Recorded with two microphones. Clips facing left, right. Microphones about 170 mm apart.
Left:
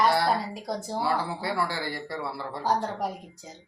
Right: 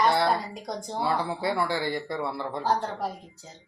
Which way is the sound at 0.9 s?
20° right (ahead or behind).